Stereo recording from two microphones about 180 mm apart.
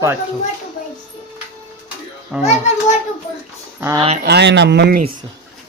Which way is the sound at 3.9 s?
35° right (ahead or behind).